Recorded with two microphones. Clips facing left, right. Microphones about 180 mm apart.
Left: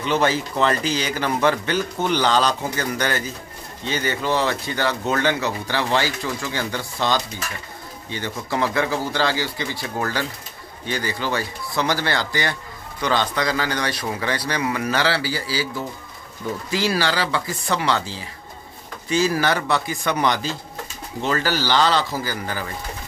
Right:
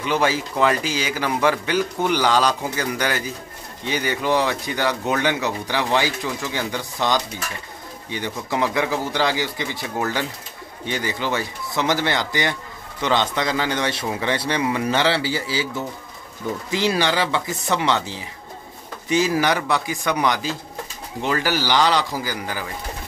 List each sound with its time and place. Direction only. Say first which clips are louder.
0.0 s a man's voice: left 1 dB; 10° right (ahead or behind)